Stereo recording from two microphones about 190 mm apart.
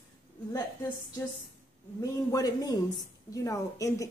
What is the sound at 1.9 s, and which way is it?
A man's voice, 20° left (ahead or behind).